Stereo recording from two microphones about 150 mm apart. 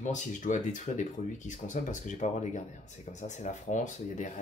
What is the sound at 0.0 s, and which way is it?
Speech, 55° left (ahead or behind).